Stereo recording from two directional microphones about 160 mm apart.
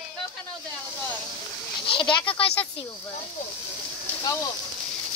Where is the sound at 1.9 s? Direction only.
35° left (ahead or behind).